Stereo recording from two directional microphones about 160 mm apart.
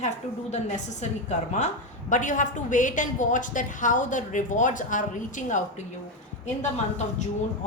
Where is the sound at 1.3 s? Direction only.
45° left (ahead or behind).